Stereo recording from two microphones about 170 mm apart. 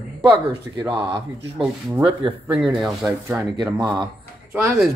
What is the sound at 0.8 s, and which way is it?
Speech, 30° right (ahead or behind).